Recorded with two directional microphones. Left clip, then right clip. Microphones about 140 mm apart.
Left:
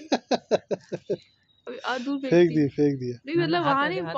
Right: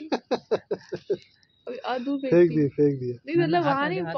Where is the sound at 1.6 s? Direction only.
20° left (ahead or behind).